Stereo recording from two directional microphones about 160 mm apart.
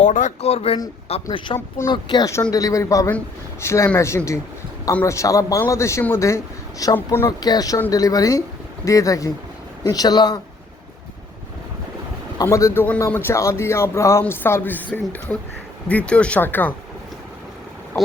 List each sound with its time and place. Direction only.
0.0 s a man's voice: 50° left (ahead or behind); by 10.4 s 25° left (ahead or behind)
12.4 s speech: 20° left (ahead or behind)